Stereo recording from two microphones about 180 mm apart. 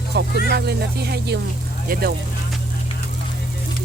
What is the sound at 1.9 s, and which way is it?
Vehicle, 55° right (ahead or behind).